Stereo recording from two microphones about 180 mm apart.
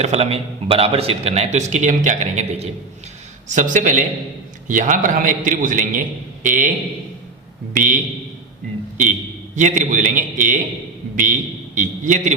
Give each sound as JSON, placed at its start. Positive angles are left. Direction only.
{"t": 0.0, "sound": "a man's voice", "side_deg": -35}
{"t": 7.7, "sound": "a man's voice", "side_deg": -45}
{"t": 9.6, "sound": "a man's voice", "side_deg": -45}